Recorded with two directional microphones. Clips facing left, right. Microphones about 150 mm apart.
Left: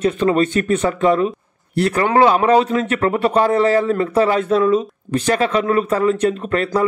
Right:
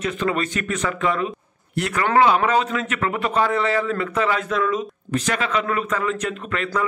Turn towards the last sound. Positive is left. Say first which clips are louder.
# left 7 dB
turn(degrees=35)  # may be behind; listen again after turning